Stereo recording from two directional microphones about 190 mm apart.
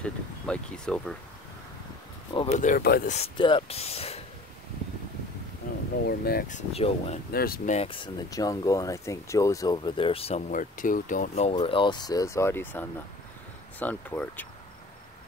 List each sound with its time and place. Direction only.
0.0 s speech: 5° left (ahead or behind)
2.3 s speech: 35° left (ahead or behind); by 3.1 s 50° left (ahead or behind)
3.1 s speech: 30° left (ahead or behind)
6.0 s speech: 55° left (ahead or behind); by 7.2 s 30° left (ahead or behind)
7.3 s speech: 50° left (ahead or behind)
7.7 s speech: 30° left (ahead or behind); by 14.5 s 10° left (ahead or behind)